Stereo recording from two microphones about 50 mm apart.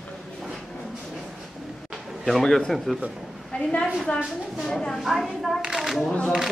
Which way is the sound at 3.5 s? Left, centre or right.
Left.